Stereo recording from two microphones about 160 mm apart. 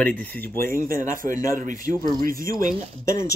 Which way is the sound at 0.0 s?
10° left (ahead or behind).